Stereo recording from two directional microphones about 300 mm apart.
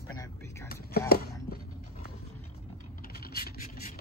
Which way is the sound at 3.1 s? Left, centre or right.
Left.